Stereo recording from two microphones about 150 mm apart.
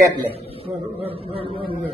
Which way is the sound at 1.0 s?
40° right (ahead or behind).